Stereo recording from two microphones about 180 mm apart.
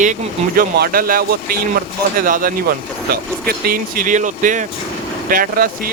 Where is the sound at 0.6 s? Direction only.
60° right (ahead or behind).